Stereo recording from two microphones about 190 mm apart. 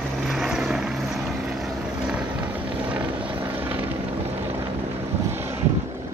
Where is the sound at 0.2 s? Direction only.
Centre (ahead or behind).